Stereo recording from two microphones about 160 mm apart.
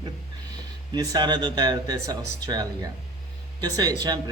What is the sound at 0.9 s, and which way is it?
Speech, 25° right (ahead or behind).